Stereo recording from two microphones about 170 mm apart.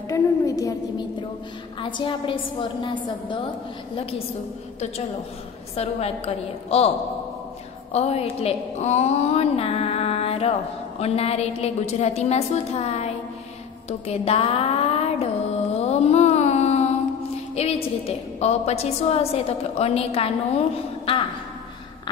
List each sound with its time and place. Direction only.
0.1 s a woman's voice: 20° left (ahead or behind)
5.8 s a woman's voice: 35° left (ahead or behind)
7.9 s a woman's voice: 40° left (ahead or behind)
15.7 s music: 40° left (ahead or behind)
17.6 s a woman's voice: 35° left (ahead or behind)